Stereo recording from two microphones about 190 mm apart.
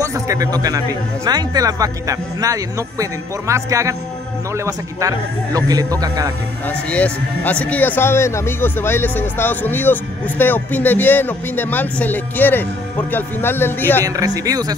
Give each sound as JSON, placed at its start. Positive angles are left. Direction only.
{"t": 0.0, "sound": "speech", "side_deg": -15}
{"t": 6.7, "sound": "speech", "side_deg": 5}
{"t": 14.0, "sound": "speech", "side_deg": -20}